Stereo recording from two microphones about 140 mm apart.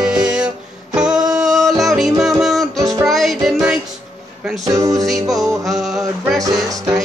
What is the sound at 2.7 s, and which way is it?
Music, 25° right (ahead or behind).